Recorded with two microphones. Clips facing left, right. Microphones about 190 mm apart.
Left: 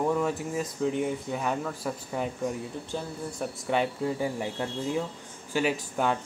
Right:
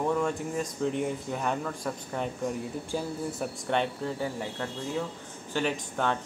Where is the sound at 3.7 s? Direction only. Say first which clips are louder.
Left 2 dB; 5° left (ahead or behind).